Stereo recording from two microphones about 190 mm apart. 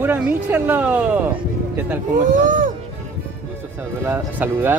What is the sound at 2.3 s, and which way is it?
Speech, 45° right (ahead or behind).